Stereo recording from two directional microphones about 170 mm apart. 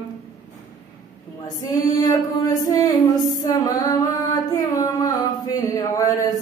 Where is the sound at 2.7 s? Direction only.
20° left (ahead or behind).